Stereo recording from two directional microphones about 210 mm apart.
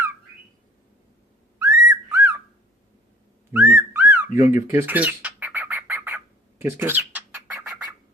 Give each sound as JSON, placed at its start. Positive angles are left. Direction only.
{"t": 1.5, "sound": "a sound", "side_deg": -15}
{"t": 3.5, "sound": "whistling", "side_deg": -5}
{"t": 4.4, "sound": "bird", "side_deg": -15}